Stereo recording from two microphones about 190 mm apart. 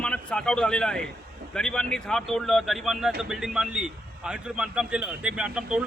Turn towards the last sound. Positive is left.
turn(degrees=-5)  # may be behind; listen again after turning